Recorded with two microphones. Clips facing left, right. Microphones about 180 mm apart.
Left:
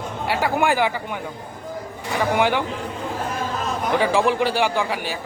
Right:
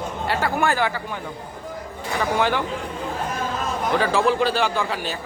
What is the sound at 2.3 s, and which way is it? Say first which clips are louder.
Speech: left 2 dB; 15° left (ahead or behind).